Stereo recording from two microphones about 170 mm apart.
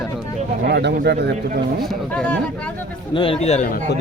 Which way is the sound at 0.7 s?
85° right.